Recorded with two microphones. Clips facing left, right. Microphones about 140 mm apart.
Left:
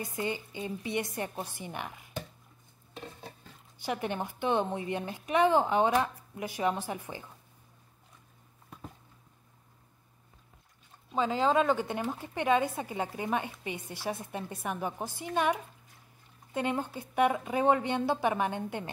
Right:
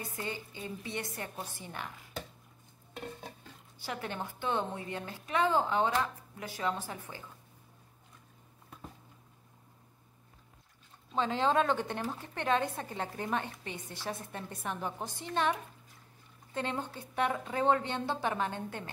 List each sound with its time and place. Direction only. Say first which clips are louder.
0.0 s a woman's voice: left 5 dB; 15° left (ahead or behind)
3.8 s a woman's voice: left 5 dB; 20° left (ahead or behind)
11.1 s a woman's voice: left 2 dB; 5° left (ahead or behind)